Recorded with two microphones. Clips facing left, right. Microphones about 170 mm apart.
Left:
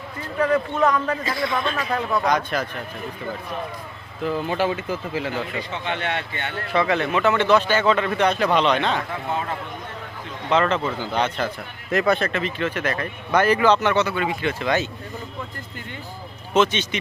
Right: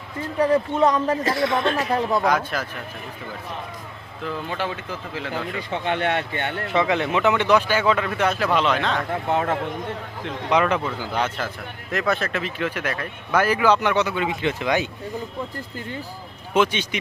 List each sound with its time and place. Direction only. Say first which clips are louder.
0.3 s a man's voice: right 1 dB; 30° right (ahead or behind)
1.2 s a man's voice: right 3 dB; 75° right (ahead or behind)
1.9 s a man's voice: right 2 dB; 30° right (ahead or behind)
2.2 s speech: even; 5° right (ahead or behind)
4.3 s speech: left 5 dB; 10° left (ahead or behind)
5.7 s speech: right 5 dB; 50° right (ahead or behind)
6.7 s speech: left 1 dB; 20° right (ahead or behind); by 9.0 s centre (ahead or behind)
9.0 s speech: right 4 dB; 65° right (ahead or behind)
10.5 s speech: even; 10° right (ahead or behind)
16.6 s speech: left 1 dB; 10° right (ahead or behind)